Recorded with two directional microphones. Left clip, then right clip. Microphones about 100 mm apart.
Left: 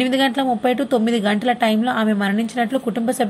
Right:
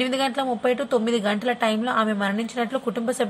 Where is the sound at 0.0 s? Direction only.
25° left (ahead or behind).